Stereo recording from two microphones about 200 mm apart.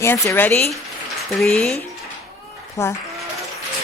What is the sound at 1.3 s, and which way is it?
Speech, centre (ahead or behind).